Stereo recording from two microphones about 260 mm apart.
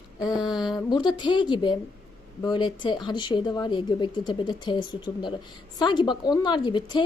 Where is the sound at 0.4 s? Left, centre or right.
Centre.